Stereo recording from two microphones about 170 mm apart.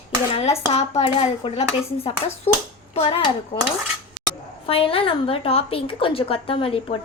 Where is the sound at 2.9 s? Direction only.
35° left (ahead or behind).